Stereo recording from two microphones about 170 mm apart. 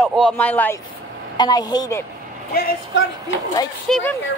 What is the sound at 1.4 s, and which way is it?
Speech, 25° left (ahead or behind).